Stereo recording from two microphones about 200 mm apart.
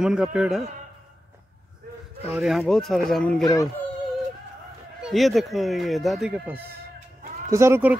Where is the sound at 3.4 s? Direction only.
15° left (ahead or behind).